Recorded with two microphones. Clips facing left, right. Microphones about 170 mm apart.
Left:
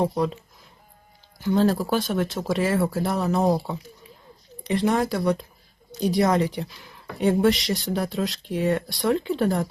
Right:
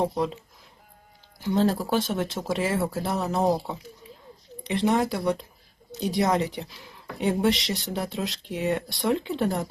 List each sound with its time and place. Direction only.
1.4 s speech: 25° right (ahead or behind)
4.6 s speech: 25° right (ahead or behind)